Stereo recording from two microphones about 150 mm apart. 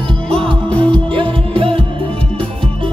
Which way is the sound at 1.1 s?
35° right (ahead or behind).